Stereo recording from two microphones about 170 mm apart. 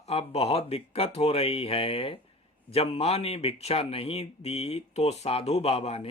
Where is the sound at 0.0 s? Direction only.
35° left (ahead or behind).